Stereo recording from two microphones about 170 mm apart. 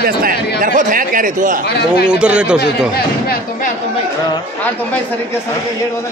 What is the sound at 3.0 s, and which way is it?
Speech, 65° left (ahead or behind).